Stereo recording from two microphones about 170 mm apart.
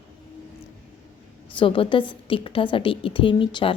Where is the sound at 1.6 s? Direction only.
30° left (ahead or behind).